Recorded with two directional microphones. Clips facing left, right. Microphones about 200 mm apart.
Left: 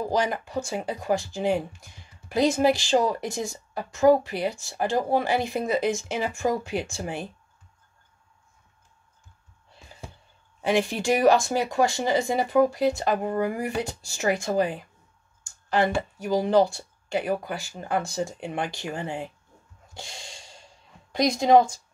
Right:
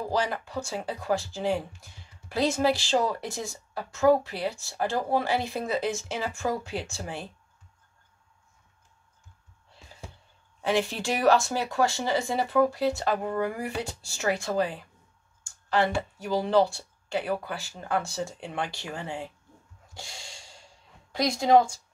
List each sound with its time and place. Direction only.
0.1 s speech: 15° left (ahead or behind)
10.6 s speech: 15° left (ahead or behind)
19.9 s a sound: 20° left (ahead or behind)
21.1 s speech: 20° left (ahead or behind)